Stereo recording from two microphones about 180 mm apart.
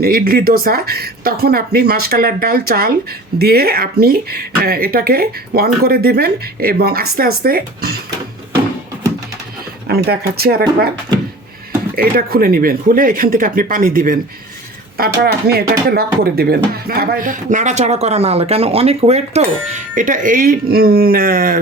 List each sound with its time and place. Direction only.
0.0 s speech: 55° right (ahead or behind)
9.8 s speech: 60° right (ahead or behind)
11.9 s speech: 55° right (ahead or behind)